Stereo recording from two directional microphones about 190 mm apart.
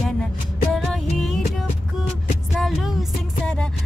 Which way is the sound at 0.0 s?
Centre (ahead or behind).